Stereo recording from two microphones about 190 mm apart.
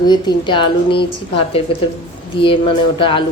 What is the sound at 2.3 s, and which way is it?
Speech, 30° left (ahead or behind).